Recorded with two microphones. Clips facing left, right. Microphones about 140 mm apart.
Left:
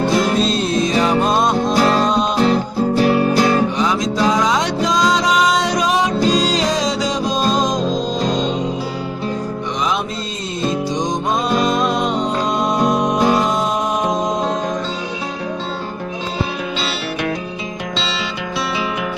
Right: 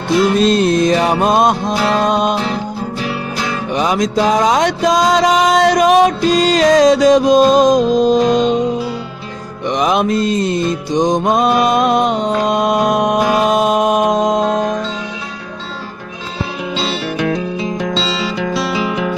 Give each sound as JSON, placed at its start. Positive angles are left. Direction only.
{"t": 0.3, "sound": "music", "side_deg": -60}
{"t": 2.4, "sound": "music", "side_deg": 40}
{"t": 3.8, "sound": "music", "side_deg": -65}
{"t": 9.7, "sound": "mantra", "side_deg": -60}
{"t": 11.0, "sound": "music", "side_deg": -55}
{"t": 17.9, "sound": "music", "side_deg": -30}